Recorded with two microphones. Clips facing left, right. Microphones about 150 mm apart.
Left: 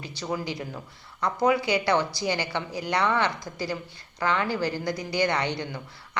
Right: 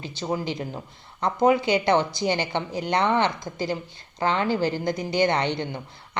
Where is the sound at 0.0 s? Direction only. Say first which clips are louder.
Right 3 dB; 20° right (ahead or behind).